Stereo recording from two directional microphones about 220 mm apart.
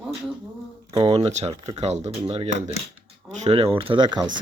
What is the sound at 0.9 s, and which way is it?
Speech, 25° right (ahead or behind).